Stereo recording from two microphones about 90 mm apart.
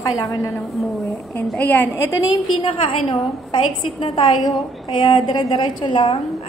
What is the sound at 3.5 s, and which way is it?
A woman's voice, 65° left (ahead or behind).